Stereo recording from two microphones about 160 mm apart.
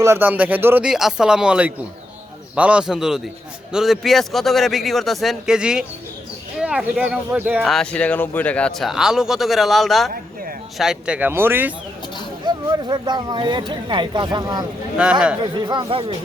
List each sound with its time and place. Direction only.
0.0 s speech: 15° right (ahead or behind)
7.6 s speech: 5° left (ahead or behind); by 11.7 s 15° right (ahead or behind)
12.5 s speech: 25° right (ahead or behind)
14.9 s speech: 5° right (ahead or behind)
15.5 s speech: 30° right (ahead or behind)